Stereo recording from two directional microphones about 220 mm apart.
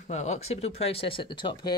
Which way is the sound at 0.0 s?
30° left (ahead or behind).